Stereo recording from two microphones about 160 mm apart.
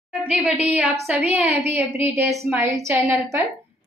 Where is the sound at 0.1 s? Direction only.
5° right (ahead or behind).